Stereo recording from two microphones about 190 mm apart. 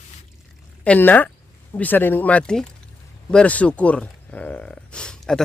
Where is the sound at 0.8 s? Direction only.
10° left (ahead or behind).